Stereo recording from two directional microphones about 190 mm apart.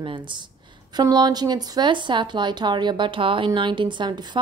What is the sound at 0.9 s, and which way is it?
Speech, 20° right (ahead or behind).